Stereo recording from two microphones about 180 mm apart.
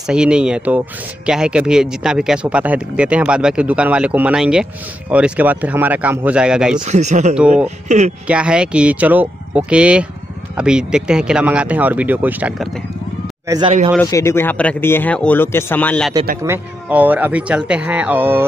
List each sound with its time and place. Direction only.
0.0 s speech: 5° right (ahead or behind)
6.8 s speech: 40° right (ahead or behind)
7.3 s speech: 5° right (ahead or behind)
7.6 s speech: 40° right (ahead or behind)
8.3 s speech: 5° right (ahead or behind)
13.9 s speech: 15° left (ahead or behind)
16.4 s speech: 10° right (ahead or behind)